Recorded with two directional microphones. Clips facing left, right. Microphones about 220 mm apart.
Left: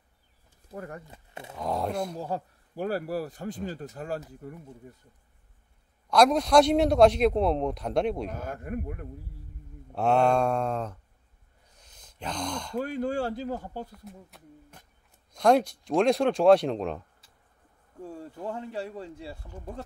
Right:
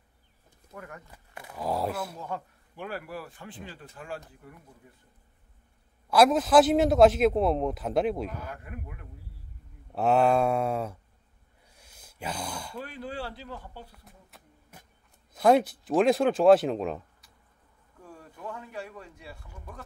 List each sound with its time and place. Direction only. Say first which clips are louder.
0.7 s speech: left 5 dB; 35° left (ahead or behind)
1.6 s a man's voice: even; 5° right (ahead or behind)
2.1 s a man's voice: left 4 dB; 35° left (ahead or behind)
6.0 s a man's voice: even; 5° right (ahead or behind)
8.3 s speech: left 5 dB; 45° left (ahead or behind)
9.9 s mantra: even; centre (ahead or behind)
11.7 s a sound: right 1 dB; 10° right (ahead or behind)
12.7 s speech: left 11 dB; 45° left (ahead or behind)
13.9 s a man's voice: left 9 dB; 5° right (ahead or behind)
18.0 s speech: left 6 dB; 30° left (ahead or behind)